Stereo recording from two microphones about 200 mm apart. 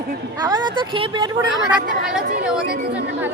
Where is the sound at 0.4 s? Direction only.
20° right (ahead or behind).